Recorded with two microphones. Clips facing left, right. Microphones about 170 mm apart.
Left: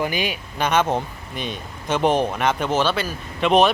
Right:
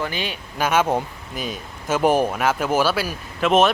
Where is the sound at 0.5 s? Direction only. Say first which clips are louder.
Right 1 dB; 5° right (ahead or behind).